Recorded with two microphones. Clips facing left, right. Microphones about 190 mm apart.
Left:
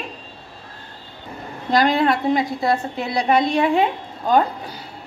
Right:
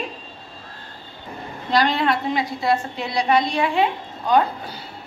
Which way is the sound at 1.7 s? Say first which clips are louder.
Left 2 dB; 45° left (ahead or behind).